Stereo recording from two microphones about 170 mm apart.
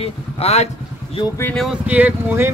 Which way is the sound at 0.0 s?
35° left (ahead or behind).